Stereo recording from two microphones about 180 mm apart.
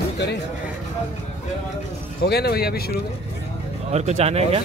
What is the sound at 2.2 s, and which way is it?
Speech, 60° left (ahead or behind).